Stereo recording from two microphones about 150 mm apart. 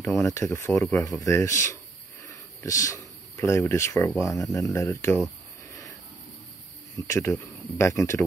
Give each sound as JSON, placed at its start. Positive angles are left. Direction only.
{"t": 0.2, "sound": "speech", "side_deg": 15}
{"t": 2.2, "sound": "insect", "side_deg": 20}
{"t": 4.2, "sound": "speech", "side_deg": 20}
{"t": 7.1, "sound": "speech", "side_deg": 20}